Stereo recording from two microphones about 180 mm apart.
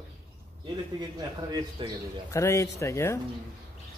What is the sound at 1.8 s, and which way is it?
Speech, 25° right (ahead or behind).